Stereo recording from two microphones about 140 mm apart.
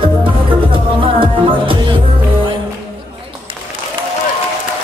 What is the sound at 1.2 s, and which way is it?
Music, 40° right (ahead or behind).